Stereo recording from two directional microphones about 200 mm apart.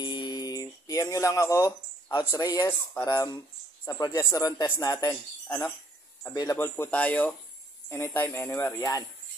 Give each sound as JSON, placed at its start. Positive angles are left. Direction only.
{"t": 0.0, "sound": "a sound", "side_deg": 20}
{"t": 3.1, "sound": "speech", "side_deg": 20}
{"t": 6.3, "sound": "speech", "side_deg": 15}